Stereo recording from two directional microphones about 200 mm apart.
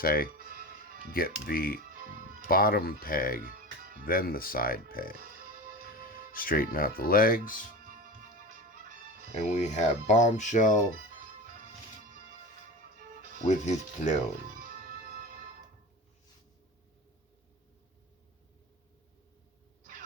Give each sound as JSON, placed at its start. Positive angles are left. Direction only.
{"t": 0.0, "sound": "speech", "side_deg": 45}
{"t": 0.3, "sound": "music", "side_deg": -45}
{"t": 1.1, "sound": "speech", "side_deg": 50}
{"t": 1.8, "sound": "music", "side_deg": -45}
{"t": 2.5, "sound": "speech", "side_deg": 45}
{"t": 3.5, "sound": "music", "side_deg": -45}
{"t": 4.0, "sound": "speech", "side_deg": 45}
{"t": 6.3, "sound": "speech", "side_deg": 45}
{"t": 7.9, "sound": "music", "side_deg": -45}
{"t": 9.3, "sound": "speech", "side_deg": 35}
{"t": 11.1, "sound": "music", "side_deg": -45}
{"t": 13.5, "sound": "speech", "side_deg": 35}
{"t": 14.5, "sound": "music", "side_deg": -45}